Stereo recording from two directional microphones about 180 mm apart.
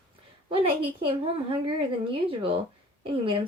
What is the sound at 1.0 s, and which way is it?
Speech, 30° right (ahead or behind).